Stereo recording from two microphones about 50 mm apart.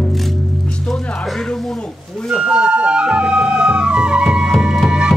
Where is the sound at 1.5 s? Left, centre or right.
Centre.